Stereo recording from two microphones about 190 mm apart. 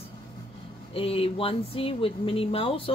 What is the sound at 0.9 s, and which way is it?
Speech, 30° left (ahead or behind).